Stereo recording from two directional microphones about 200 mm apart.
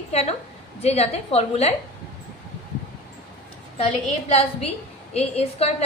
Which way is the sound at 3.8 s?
30° left (ahead or behind).